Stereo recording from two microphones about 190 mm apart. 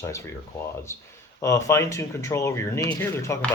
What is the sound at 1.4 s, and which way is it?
Speech, 15° left (ahead or behind).